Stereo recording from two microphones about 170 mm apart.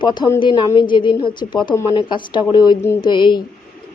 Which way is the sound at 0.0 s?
25° left (ahead or behind).